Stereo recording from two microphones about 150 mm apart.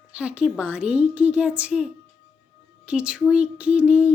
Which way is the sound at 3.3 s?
5° right (ahead or behind).